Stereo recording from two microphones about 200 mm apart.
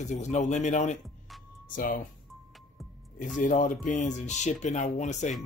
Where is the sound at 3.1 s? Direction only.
40° left (ahead or behind).